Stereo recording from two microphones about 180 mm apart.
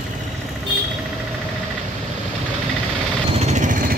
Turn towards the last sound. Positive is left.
turn(degrees=-45)  # may be behind; listen again after turning